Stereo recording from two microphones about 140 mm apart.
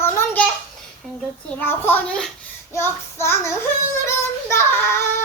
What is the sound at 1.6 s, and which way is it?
Speech, 15° left (ahead or behind).